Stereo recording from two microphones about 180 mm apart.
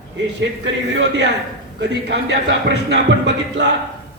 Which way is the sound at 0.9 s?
70° right (ahead or behind).